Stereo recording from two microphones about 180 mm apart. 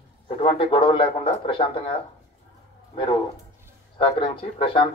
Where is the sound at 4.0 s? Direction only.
30° left (ahead or behind).